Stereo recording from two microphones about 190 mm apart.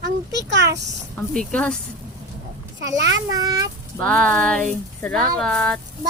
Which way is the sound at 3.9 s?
5° left (ahead or behind).